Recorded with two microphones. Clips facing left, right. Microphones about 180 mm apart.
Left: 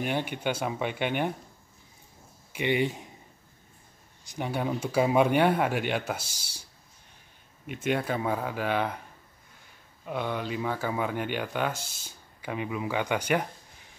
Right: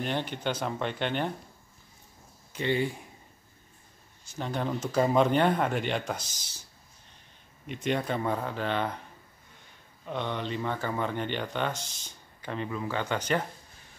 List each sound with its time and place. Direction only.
0.0 s speech: 10° left (ahead or behind)
2.5 s speech: 15° left (ahead or behind)
4.3 s speech: 10° left (ahead or behind)
7.6 s speech: 5° left (ahead or behind)
10.0 s speech: 5° left (ahead or behind)